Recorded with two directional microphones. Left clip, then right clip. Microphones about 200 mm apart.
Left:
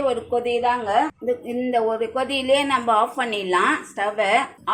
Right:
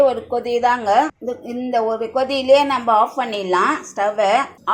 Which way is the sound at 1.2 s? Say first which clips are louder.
Left 1 dB; 15° right (ahead or behind).